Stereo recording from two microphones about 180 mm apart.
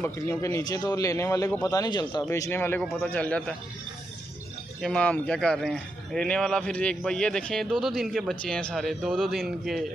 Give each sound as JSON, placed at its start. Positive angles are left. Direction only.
{"t": 0.0, "sound": "a man's voice", "side_deg": 15}
{"t": 4.8, "sound": "a man's voice", "side_deg": 5}